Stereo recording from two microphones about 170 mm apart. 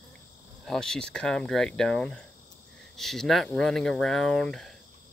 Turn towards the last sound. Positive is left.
turn(degrees=0)  # may be behind; listen again after turning